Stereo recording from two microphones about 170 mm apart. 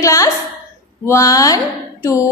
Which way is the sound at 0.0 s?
20° left (ahead or behind).